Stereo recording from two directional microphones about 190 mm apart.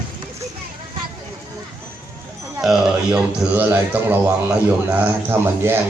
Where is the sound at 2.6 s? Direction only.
5° right (ahead or behind).